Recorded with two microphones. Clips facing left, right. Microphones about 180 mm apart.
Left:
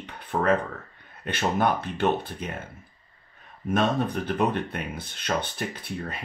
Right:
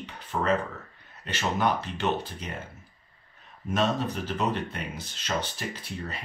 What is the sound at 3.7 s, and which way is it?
Speech, 55° left (ahead or behind).